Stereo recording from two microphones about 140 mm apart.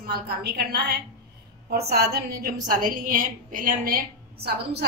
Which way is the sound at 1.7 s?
90° right.